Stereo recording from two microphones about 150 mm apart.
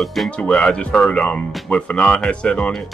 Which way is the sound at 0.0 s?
Centre (ahead or behind).